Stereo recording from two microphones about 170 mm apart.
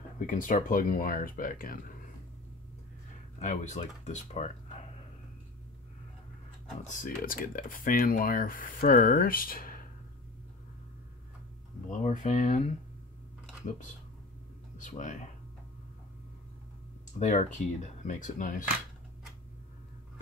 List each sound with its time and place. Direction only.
0.3 s speech: 50° left (ahead or behind)
3.3 s speech: 45° left (ahead or behind)
6.9 s speech: 55° left (ahead or behind)
11.9 s speech: 50° left (ahead or behind)
14.8 s speech: 45° left (ahead or behind)
17.2 s speech: 45° left (ahead or behind)